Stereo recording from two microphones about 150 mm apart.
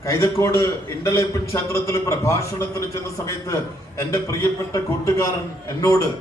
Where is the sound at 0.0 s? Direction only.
20° left (ahead or behind).